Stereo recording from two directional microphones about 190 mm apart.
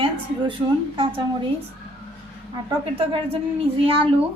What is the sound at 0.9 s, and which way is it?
Speech, 30° right (ahead or behind).